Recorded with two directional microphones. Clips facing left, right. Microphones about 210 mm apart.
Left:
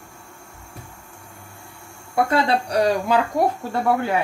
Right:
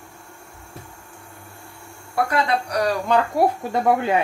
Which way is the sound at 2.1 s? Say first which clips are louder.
Left 2 dB; 25° left (ahead or behind).